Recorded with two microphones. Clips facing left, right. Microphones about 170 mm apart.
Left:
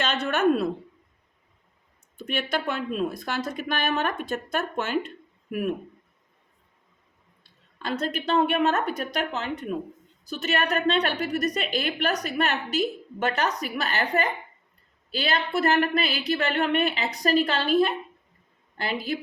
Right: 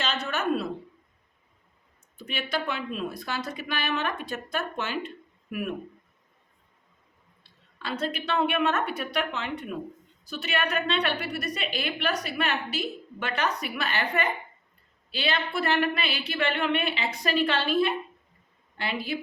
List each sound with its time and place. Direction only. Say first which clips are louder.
0.3 s speech: left 7 dB; 55° left (ahead or behind)
2.1 s speech: left 3 dB; 50° left (ahead or behind)
7.8 s a woman's voice: left 2 dB; 45° left (ahead or behind)